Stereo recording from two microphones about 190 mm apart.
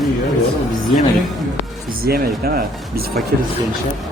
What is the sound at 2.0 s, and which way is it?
Speech, 50° right (ahead or behind).